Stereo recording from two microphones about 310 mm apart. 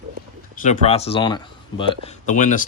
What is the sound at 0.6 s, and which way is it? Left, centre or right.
Speech, left.